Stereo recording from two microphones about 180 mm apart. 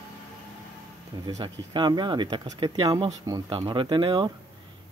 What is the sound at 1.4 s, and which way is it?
Speech, 25° right (ahead or behind).